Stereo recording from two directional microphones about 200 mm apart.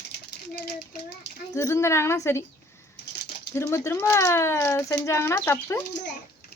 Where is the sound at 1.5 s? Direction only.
15° left (ahead or behind).